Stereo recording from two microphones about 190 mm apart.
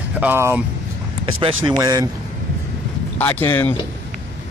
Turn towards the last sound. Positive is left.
turn(degrees=10)  # may be behind; listen again after turning